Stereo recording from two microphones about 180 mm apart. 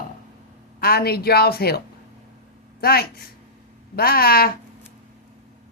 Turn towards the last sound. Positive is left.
turn(degrees=55)  # may be behind; listen again after turning